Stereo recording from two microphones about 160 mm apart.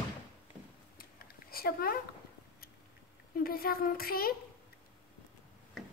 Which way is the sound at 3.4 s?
65° left (ahead or behind).